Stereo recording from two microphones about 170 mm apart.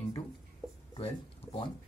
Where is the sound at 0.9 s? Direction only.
30° left (ahead or behind).